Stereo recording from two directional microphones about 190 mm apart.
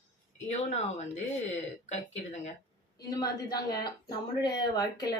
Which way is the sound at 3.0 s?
20° left (ahead or behind).